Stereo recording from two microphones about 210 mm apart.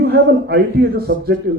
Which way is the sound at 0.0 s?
50° right (ahead or behind).